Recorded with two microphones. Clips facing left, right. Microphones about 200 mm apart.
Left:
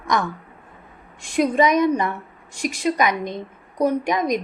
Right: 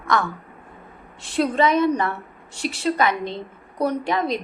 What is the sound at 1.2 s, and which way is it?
A woman's voice, 10° left (ahead or behind).